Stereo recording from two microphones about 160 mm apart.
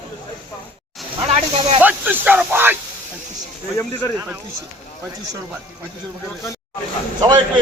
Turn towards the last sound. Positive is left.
turn(degrees=-25)  # may be behind; listen again after turning